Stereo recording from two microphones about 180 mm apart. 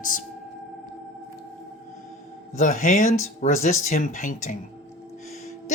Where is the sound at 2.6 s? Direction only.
45° left (ahead or behind).